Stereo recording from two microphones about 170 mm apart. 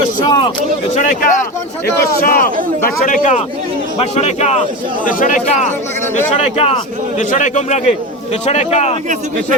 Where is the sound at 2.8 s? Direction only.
50° left (ahead or behind).